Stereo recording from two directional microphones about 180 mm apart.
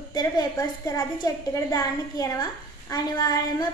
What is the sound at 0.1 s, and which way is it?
A woman's voice, 20° left (ahead or behind).